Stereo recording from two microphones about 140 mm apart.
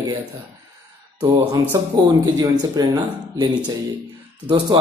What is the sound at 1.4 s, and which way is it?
Speech, 25° right (ahead or behind).